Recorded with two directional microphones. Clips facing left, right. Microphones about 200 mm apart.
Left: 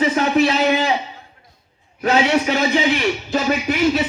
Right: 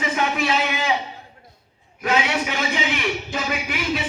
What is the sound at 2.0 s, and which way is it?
A man's voice, 40° left (ahead or behind).